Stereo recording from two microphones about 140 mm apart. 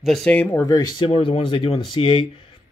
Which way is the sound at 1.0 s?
40° left (ahead or behind).